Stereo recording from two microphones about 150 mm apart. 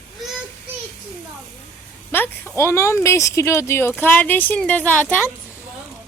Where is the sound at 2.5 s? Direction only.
20° left (ahead or behind).